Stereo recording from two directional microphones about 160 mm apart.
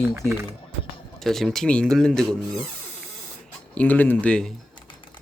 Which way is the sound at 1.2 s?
Centre (ahead or behind).